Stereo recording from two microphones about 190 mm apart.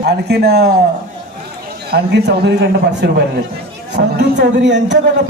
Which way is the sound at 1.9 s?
60° right (ahead or behind).